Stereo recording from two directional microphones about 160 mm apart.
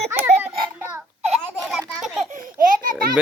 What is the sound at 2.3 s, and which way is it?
Baby laughter, 60° right (ahead or behind).